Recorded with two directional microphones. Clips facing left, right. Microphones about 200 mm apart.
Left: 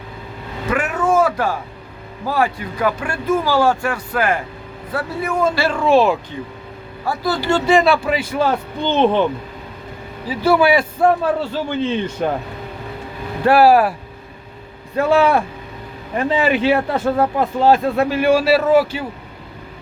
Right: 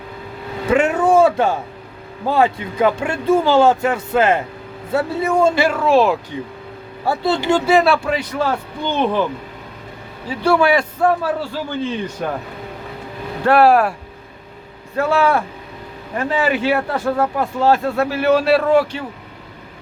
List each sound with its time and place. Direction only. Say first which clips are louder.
0.7 s a sound: right 4 dB; 25° right (ahead or behind)
2.2 s speech: right 3 dB; 25° right (ahead or behind)
5.7 s speech: even; centre (ahead or behind)
7.0 s speech: right 2 dB; 25° right (ahead or behind)
7.7 s speech: left 2 dB; centre (ahead or behind); by 9.2 s 25° left (ahead or behind)
10.2 s speech: left 1 dB; 5° left (ahead or behind)
11.0 s a man's voice: left 2 dB; 25° left (ahead or behind)
13.4 s speech: left 1 dB; 5° left (ahead or behind)
14.9 s speech: left 2 dB; 15° left (ahead or behind)